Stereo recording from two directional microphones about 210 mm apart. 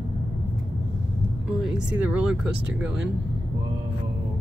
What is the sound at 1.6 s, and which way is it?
Speech, 5° right (ahead or behind).